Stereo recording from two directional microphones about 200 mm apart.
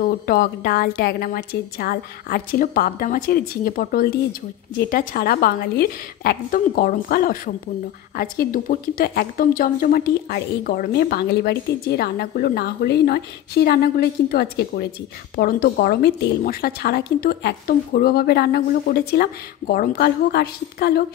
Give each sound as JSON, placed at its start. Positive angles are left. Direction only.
{"t": 0.0, "sound": "a woman's voice", "side_deg": 50}